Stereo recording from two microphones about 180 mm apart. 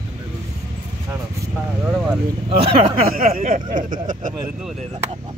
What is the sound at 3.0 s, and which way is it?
Speech, 55° right (ahead or behind).